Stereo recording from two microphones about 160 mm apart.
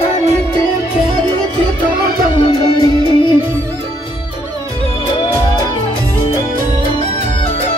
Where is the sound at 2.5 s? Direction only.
25° left (ahead or behind).